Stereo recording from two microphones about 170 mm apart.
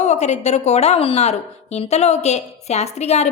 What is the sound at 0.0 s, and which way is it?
A woman's voice, 40° left (ahead or behind).